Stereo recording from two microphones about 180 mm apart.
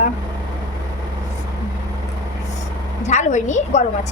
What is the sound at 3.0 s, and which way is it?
Speech, 40° left (ahead or behind).